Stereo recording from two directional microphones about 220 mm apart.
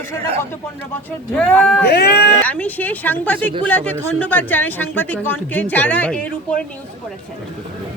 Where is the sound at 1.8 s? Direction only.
45° left (ahead or behind).